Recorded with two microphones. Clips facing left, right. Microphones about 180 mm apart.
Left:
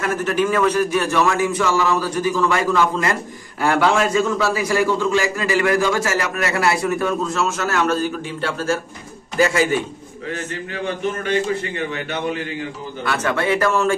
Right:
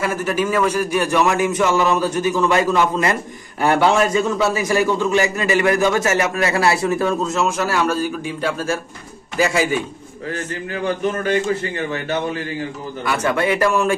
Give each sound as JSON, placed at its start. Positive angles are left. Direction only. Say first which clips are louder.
{"t": 0.0, "sound": "a man's voice", "louder": "left 1 dB", "side_deg": -10}
{"t": 13.0, "sound": "a man's voice", "louder": "right 2 dB", "side_deg": -10}